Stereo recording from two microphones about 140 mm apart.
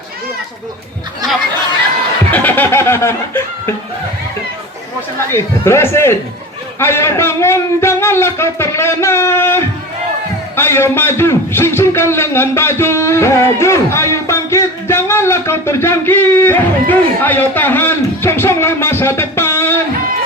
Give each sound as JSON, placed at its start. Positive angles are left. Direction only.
{"t": 2.3, "sound": "a man's voice", "side_deg": 15}
{"t": 5.3, "sound": "a man's voice", "side_deg": 20}